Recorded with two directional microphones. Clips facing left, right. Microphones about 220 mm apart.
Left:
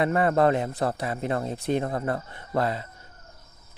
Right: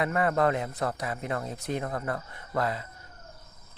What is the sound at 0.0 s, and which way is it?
Speech, 30° left (ahead or behind).